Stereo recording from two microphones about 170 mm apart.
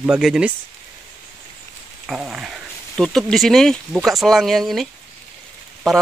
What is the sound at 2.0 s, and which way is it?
Speech, 5° right (ahead or behind).